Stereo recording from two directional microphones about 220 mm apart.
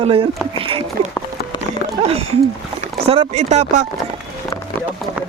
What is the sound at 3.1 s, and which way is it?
Speech, 30° right (ahead or behind).